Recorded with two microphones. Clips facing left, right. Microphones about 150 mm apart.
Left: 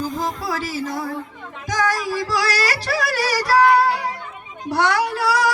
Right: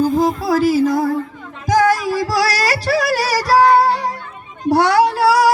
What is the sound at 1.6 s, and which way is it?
Music, 35° right (ahead or behind).